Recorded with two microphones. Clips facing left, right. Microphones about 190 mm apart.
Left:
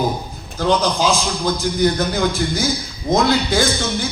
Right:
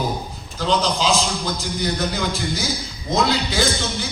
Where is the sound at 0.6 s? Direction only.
50° left (ahead or behind).